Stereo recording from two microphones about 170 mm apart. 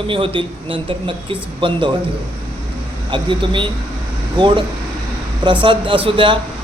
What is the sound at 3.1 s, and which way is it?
Speech, 30° right (ahead or behind).